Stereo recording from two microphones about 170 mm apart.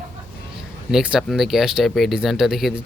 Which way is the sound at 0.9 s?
5° right (ahead or behind).